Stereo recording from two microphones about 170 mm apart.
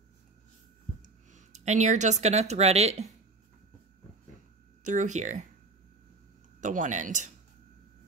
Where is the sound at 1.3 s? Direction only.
45° right (ahead or behind).